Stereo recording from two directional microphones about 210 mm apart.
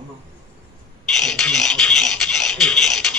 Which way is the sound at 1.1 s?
Centre (ahead or behind).